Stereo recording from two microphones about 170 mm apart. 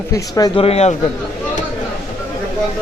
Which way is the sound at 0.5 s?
35° left (ahead or behind).